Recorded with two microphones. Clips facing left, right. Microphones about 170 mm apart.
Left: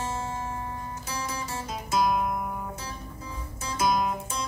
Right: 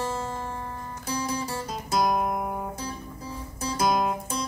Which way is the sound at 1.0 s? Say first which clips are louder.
Right 7 dB; 35° right (ahead or behind).